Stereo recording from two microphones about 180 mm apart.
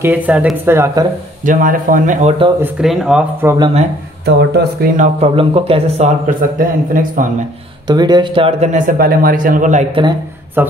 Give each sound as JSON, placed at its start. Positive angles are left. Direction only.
{"t": 0.0, "sound": "speech", "side_deg": -10}
{"t": 1.4, "sound": "speech", "side_deg": -50}
{"t": 2.6, "sound": "speech", "side_deg": 0}
{"t": 3.4, "sound": "speech", "side_deg": -25}
{"t": 4.3, "sound": "speech", "side_deg": -70}
{"t": 4.9, "sound": "speech", "side_deg": -45}
{"t": 5.3, "sound": "speech", "side_deg": -30}
{"t": 6.6, "sound": "speech", "side_deg": -50}
{"t": 7.9, "sound": "speech", "side_deg": -25}
{"t": 10.6, "sound": "speech", "side_deg": -10}